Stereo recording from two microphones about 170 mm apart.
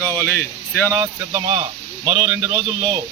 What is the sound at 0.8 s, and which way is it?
Speech, 20° right (ahead or behind).